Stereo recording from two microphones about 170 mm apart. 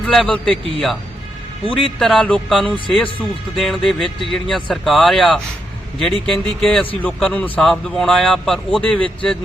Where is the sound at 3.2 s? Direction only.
Centre (ahead or behind).